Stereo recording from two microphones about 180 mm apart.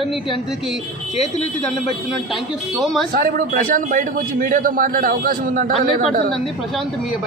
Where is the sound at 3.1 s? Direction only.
50° right (ahead or behind).